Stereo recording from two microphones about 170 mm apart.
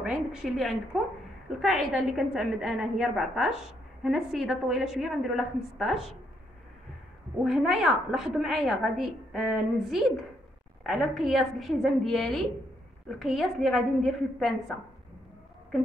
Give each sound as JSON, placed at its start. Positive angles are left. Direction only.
{"t": 0.0, "sound": "a woman's voice", "side_deg": -5}
{"t": 7.4, "sound": "a woman's voice", "side_deg": 0}